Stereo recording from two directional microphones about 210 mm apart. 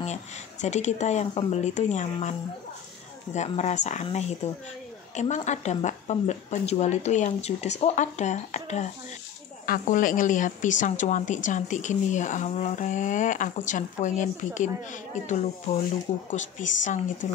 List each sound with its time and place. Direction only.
0.0 s a woman's voice: 35° left (ahead or behind)
3.3 s a woman's voice: 35° left (ahead or behind)